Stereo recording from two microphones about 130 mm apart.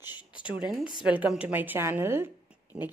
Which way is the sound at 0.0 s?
35° left (ahead or behind).